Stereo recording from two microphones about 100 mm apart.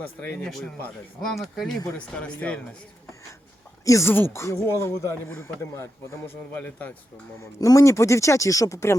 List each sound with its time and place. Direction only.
0.0 s speech: 15° left (ahead or behind)
0.4 s speech: 5° left (ahead or behind)
2.0 s speech: 15° left (ahead or behind)
3.8 s a man's voice: 30° left (ahead or behind); by 6.9 s 15° left (ahead or behind)
7.6 s speech: 30° left (ahead or behind)